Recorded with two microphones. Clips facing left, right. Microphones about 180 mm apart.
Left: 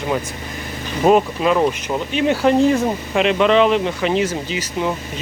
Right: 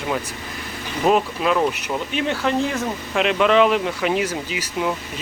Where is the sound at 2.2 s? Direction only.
15° left (ahead or behind).